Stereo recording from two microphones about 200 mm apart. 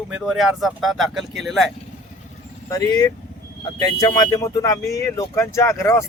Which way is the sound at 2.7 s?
15° left (ahead or behind).